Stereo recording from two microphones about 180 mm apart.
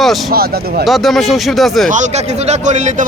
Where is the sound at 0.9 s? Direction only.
Centre (ahead or behind).